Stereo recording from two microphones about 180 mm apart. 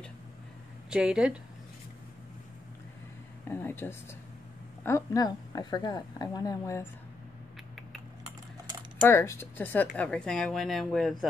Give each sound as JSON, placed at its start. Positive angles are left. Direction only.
{"t": 0.8, "sound": "speech", "side_deg": -5}
{"t": 3.4, "sound": "a woman's voice", "side_deg": 15}
{"t": 9.0, "sound": "speech", "side_deg": 15}